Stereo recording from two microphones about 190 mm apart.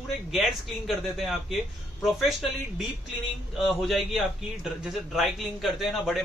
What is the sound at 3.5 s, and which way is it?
Speech, centre (ahead or behind).